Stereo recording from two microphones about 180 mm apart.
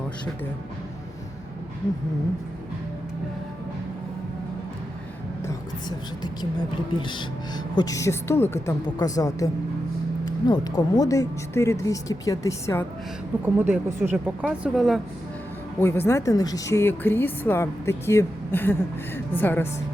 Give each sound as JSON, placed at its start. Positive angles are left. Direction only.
{"t": 6.9, "sound": "speech", "side_deg": 25}
{"t": 13.4, "sound": "speech", "side_deg": -10}
{"t": 15.8, "sound": "speech", "side_deg": 15}